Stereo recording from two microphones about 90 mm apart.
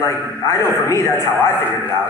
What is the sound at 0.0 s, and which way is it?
A man's voice, 35° left (ahead or behind).